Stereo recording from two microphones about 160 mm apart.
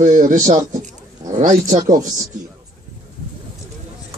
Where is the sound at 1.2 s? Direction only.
45° right (ahead or behind).